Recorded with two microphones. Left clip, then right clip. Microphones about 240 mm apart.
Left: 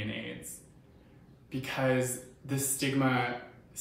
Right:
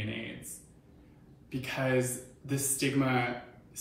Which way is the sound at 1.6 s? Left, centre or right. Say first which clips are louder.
Left 1 dB; centre.